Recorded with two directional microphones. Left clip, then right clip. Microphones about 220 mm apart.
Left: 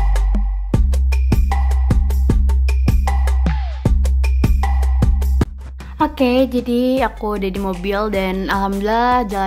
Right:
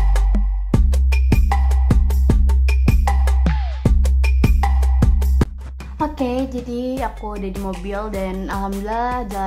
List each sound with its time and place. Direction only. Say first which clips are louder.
0.1 s music: even; centre (ahead or behind)
5.9 s speech: left 6 dB; 15° left (ahead or behind)
6.7 s music: left 7 dB; 20° left (ahead or behind)